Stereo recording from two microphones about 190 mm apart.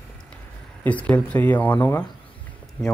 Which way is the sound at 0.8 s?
5° left (ahead or behind).